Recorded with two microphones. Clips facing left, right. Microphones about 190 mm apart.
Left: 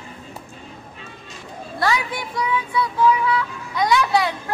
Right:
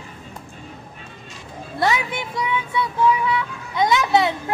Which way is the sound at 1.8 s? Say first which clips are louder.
Right 1 dB; 25° right (ahead or behind).